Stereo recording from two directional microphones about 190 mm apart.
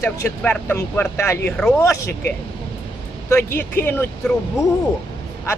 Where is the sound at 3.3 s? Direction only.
10° left (ahead or behind).